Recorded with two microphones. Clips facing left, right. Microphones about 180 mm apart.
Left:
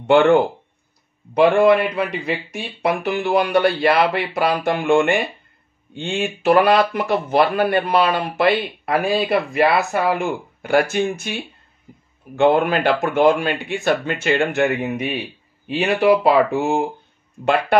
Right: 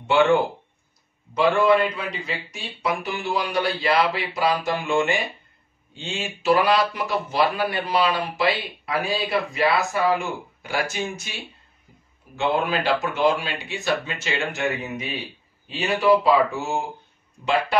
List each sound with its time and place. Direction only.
0.0 s speech: 55° left (ahead or behind)
12.4 s speech: 55° left (ahead or behind)